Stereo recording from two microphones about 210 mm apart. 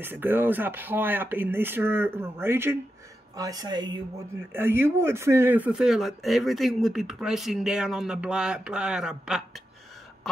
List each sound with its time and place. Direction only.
0.0 s speech: 10° right (ahead or behind)